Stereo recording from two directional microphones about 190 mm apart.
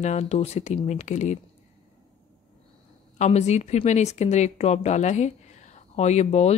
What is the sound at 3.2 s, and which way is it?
A woman's voice, 35° left (ahead or behind).